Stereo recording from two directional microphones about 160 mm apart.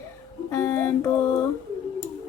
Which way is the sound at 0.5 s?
15° left (ahead or behind).